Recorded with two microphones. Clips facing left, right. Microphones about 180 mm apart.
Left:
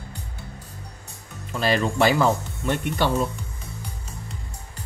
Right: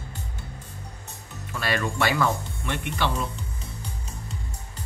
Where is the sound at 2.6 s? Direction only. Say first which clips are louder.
Left 5 dB; 40° left (ahead or behind).